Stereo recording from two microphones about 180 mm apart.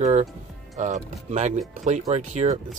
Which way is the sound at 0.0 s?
40° right (ahead or behind).